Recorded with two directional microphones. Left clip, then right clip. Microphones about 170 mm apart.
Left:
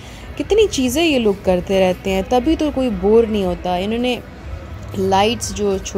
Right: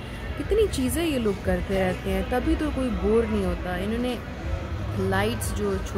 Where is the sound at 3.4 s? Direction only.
15° left (ahead or behind).